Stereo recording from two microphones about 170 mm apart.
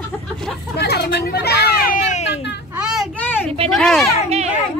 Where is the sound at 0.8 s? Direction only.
75° left (ahead or behind).